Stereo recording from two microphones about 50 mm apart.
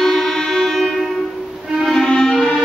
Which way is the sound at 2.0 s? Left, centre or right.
Centre.